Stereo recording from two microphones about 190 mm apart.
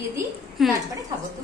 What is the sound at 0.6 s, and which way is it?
Speech, centre (ahead or behind).